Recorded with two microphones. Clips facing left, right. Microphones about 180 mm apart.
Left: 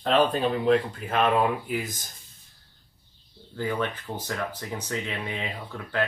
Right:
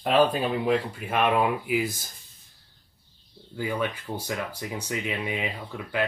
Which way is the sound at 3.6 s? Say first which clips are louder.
Even; 10° right (ahead or behind).